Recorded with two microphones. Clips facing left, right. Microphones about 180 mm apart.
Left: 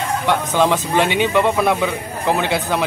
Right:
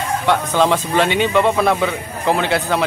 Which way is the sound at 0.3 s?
15° left (ahead or behind).